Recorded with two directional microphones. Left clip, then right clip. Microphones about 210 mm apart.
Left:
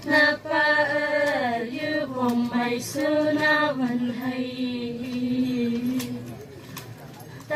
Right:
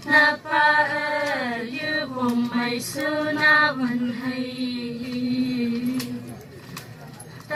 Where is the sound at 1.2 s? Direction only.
20° right (ahead or behind).